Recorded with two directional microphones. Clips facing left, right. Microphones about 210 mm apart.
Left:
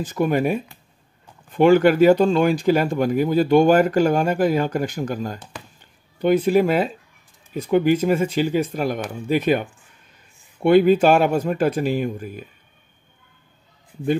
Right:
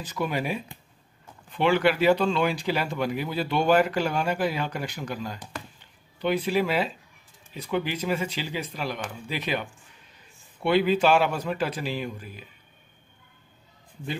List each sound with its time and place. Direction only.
0.0 s speech: 50° left (ahead or behind)
5.8 s a sound: 45° left (ahead or behind)
7.5 s speech: 50° left (ahead or behind)